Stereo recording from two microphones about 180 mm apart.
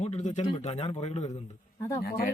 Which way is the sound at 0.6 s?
35° left (ahead or behind).